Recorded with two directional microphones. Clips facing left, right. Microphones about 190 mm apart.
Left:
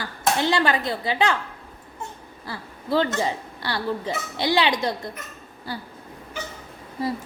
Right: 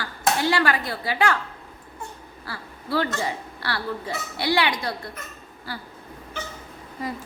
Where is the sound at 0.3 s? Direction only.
20° left (ahead or behind).